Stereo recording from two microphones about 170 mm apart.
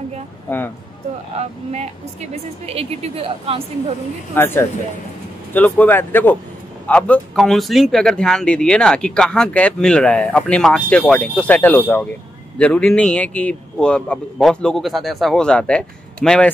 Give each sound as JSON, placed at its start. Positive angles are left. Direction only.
{"t": 1.3, "sound": "a woman's voice", "side_deg": -40}
{"t": 4.4, "sound": "speech", "side_deg": 15}